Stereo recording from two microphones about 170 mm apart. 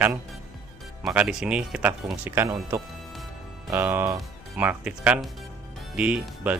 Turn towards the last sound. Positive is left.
turn(degrees=-10)  # may be behind; listen again after turning